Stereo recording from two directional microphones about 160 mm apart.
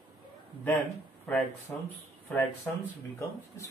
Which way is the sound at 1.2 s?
10° left (ahead or behind).